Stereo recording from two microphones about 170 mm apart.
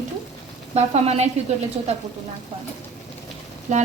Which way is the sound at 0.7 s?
40° right (ahead or behind).